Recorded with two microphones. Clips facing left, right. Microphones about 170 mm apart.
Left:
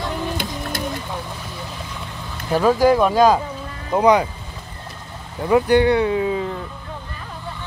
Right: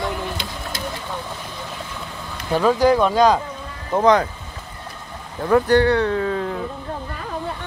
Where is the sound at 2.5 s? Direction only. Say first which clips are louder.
Left 1 dB; 10° left (ahead or behind).